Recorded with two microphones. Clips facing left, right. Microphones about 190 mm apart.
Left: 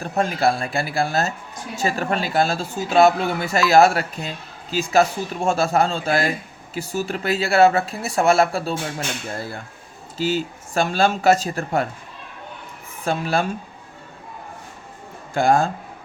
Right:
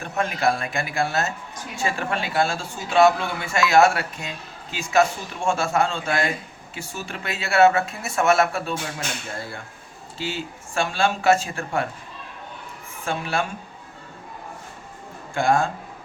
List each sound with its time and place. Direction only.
0.0 s speech: 35° left (ahead or behind)
10.2 s speech: 40° left (ahead or behind)
13.1 s speech: 35° left (ahead or behind)
15.4 s speech: 35° left (ahead or behind)